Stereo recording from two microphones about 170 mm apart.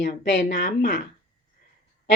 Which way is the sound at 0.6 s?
70° left (ahead or behind).